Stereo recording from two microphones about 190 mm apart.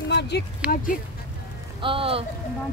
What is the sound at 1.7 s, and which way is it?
Speech, 30° right (ahead or behind).